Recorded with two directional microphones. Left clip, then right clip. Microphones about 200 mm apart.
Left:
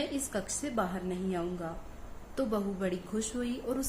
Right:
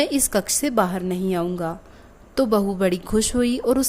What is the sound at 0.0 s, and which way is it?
Speech, 50° right (ahead or behind).